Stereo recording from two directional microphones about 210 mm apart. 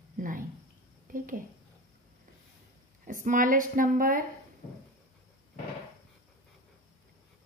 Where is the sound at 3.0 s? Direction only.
40° right (ahead or behind).